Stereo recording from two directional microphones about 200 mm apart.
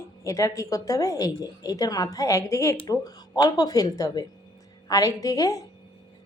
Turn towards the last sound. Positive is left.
turn(degrees=15)  # may be behind; listen again after turning